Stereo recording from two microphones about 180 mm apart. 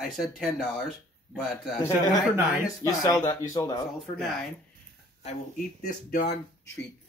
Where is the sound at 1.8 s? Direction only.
15° left (ahead or behind).